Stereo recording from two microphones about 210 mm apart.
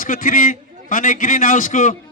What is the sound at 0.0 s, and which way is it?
A man's voice, 40° left (ahead or behind).